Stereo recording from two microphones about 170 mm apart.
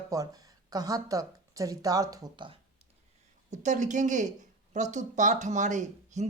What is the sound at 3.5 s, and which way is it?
Speech, 45° right (ahead or behind).